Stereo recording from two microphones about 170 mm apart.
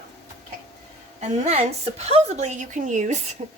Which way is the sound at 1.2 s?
35° right (ahead or behind).